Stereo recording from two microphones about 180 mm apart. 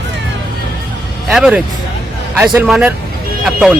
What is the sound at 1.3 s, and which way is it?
A man's voice, 5° right (ahead or behind).